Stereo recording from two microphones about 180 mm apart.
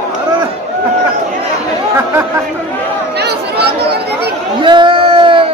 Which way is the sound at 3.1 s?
65° right (ahead or behind).